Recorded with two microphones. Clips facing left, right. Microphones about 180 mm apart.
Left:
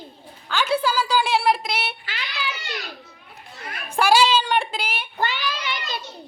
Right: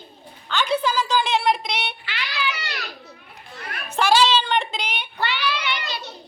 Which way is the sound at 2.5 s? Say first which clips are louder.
Right 2 dB; 70° right (ahead or behind).